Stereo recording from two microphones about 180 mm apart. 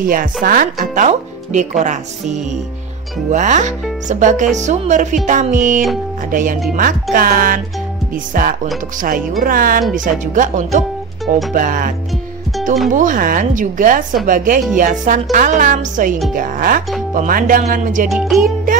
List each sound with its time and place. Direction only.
0.0 s speech: 50° right (ahead or behind)
12.9 s speech: 50° right (ahead or behind)
18.0 s music: centre (ahead or behind)